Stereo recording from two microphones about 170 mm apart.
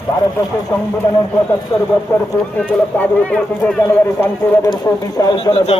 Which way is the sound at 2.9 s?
10° left (ahead or behind).